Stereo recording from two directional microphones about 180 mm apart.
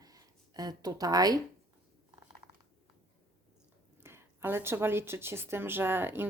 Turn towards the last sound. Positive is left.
turn(degrees=-10)  # may be behind; listen again after turning